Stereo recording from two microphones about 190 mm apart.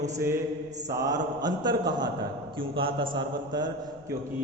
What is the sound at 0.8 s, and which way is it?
A man's voice, 20° right (ahead or behind).